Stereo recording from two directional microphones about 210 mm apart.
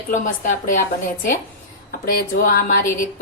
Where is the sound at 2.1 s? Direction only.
45° left (ahead or behind).